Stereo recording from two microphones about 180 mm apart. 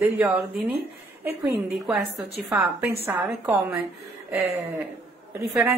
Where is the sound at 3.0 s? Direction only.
10° right (ahead or behind).